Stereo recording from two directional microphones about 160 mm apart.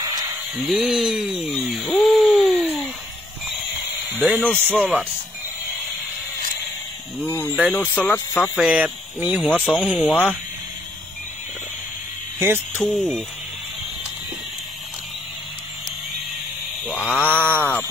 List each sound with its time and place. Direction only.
0.0 s a sound: 25° right (ahead or behind)
0.6 s a sound: centre (ahead or behind)
4.2 s speech: 10° right (ahead or behind)
4.7 s speech: centre (ahead or behind)
7.2 s speech: 15° left (ahead or behind)
8.5 s speech: 5° right (ahead or behind)
9.9 s speech: 10° left (ahead or behind)
12.4 s speech: 15° right (ahead or behind)
16.8 s mantra: centre (ahead or behind)
17.2 s speech: 10° right (ahead or behind)
17.6 s speech: 10° left (ahead or behind)